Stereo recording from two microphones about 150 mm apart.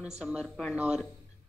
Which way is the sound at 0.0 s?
5° right (ahead or behind).